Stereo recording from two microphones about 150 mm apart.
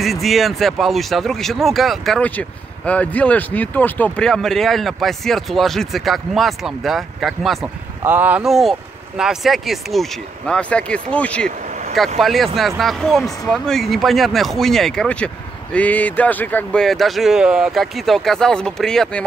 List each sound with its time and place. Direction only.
0.0 s speech: centre (ahead or behind)
8.0 s speech: 15° right (ahead or behind)
8.5 s speech: centre (ahead or behind)
11.6 s vehicle: 55° right (ahead or behind)
12.2 s speech: centre (ahead or behind)